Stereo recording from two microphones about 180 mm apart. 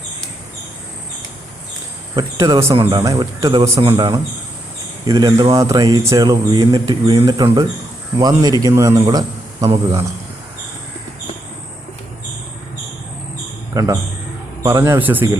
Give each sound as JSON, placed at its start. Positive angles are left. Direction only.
{"t": 2.1, "sound": "speech", "side_deg": -20}
{"t": 13.7, "sound": "a man's voice", "side_deg": -20}